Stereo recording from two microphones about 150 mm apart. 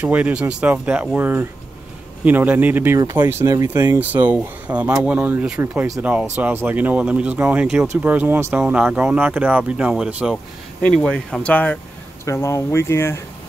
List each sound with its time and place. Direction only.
0.0 s speech: 10° right (ahead or behind)
10.3 s speech: 5° left (ahead or behind)
12.3 s speech: 20° left (ahead or behind)